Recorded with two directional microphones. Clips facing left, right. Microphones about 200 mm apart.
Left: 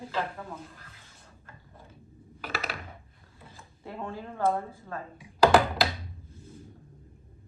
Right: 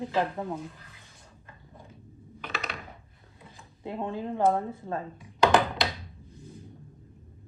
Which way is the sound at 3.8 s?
20° right (ahead or behind).